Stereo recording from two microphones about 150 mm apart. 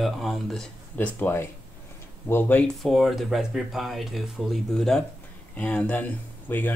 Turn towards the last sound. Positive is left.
turn(degrees=10)  # may be behind; listen again after turning